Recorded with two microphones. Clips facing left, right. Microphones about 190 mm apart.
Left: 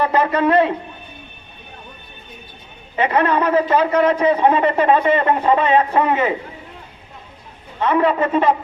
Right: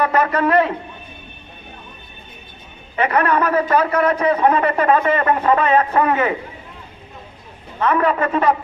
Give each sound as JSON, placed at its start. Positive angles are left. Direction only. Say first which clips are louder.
{"t": 0.0, "sound": "a man's voice", "louder": "left 1 dB", "side_deg": 25}
{"t": 2.9, "sound": "a man's voice", "louder": "even", "side_deg": 25}
{"t": 7.8, "sound": "a man's voice", "louder": "left 1 dB", "side_deg": 20}